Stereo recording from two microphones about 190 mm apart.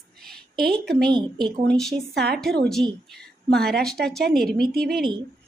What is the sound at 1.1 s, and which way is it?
Speech, 25° right (ahead or behind).